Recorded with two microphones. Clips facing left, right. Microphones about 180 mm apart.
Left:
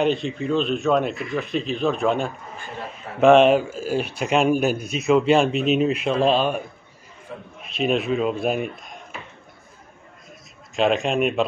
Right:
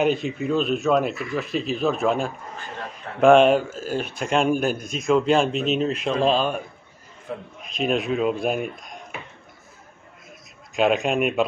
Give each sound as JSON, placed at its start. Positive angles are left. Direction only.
{"t": 0.0, "sound": "a man's voice", "side_deg": -5}
{"t": 7.6, "sound": "a man's voice", "side_deg": 0}
{"t": 10.7, "sound": "a man's voice", "side_deg": 0}